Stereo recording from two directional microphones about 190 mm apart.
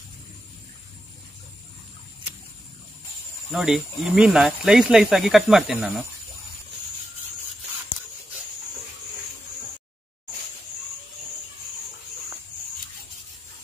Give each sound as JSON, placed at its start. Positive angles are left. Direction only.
{"t": 3.5, "sound": "speech", "side_deg": 0}